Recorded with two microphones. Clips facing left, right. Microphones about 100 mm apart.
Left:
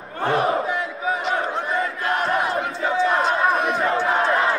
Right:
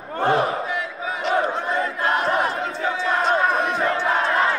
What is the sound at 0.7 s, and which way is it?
Battle cry, 35° left (ahead or behind).